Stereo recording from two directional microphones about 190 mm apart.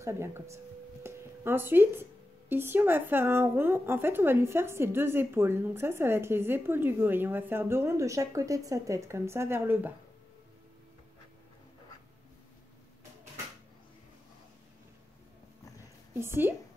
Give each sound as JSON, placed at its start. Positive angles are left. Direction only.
{"t": 0.0, "sound": "a woman's voice", "side_deg": -15}
{"t": 1.0, "sound": "a sound", "side_deg": -10}
{"t": 2.5, "sound": "a woman's voice", "side_deg": -10}
{"t": 16.2, "sound": "a woman's voice", "side_deg": -10}